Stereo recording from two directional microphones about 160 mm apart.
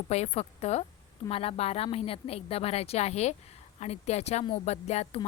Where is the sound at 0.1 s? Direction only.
40° left (ahead or behind).